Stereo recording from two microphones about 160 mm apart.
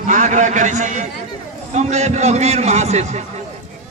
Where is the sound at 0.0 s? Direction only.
50° right (ahead or behind).